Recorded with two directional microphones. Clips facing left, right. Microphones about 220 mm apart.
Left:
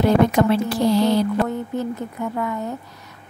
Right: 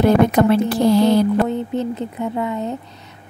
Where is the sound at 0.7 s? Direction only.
50° right (ahead or behind).